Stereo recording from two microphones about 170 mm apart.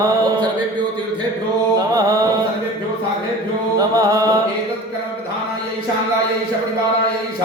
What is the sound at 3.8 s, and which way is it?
Music, 20° right (ahead or behind).